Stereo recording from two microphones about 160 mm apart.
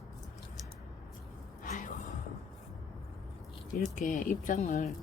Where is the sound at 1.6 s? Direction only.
50° left (ahead or behind).